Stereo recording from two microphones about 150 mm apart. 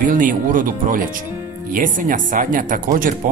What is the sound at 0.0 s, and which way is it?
Speech, 65° right (ahead or behind).